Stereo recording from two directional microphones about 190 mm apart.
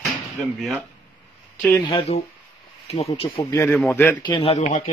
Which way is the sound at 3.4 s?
15° left (ahead or behind).